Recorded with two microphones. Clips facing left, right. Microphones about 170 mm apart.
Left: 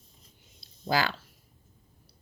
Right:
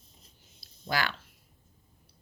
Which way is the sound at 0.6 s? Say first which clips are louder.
Left 4 dB; 25° left (ahead or behind).